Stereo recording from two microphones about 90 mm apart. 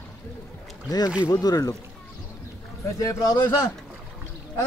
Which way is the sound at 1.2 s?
40° left (ahead or behind).